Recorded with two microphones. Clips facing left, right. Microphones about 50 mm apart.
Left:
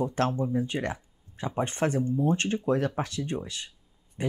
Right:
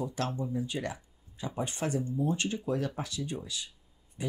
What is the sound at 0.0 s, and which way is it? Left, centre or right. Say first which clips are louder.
Speech: left 7 dB; left.